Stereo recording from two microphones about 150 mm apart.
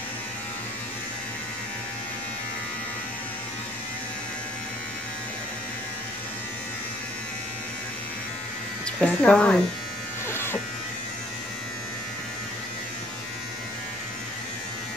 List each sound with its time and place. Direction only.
9.0 s speech: 5° left (ahead or behind)
10.3 s electric shaver: 15° left (ahead or behind)